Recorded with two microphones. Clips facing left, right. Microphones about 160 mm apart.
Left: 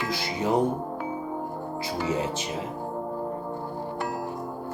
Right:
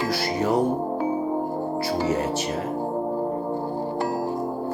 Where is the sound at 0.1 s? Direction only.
15° left (ahead or behind).